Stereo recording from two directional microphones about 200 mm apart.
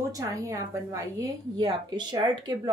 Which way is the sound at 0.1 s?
15° right (ahead or behind).